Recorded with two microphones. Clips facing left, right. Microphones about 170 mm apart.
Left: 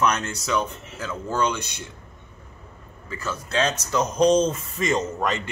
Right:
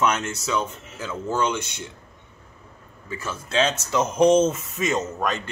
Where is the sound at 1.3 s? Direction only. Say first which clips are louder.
Left 1 dB; 25° right (ahead or behind).